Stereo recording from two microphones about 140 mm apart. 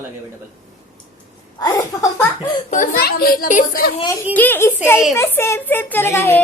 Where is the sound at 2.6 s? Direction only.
75° left (ahead or behind).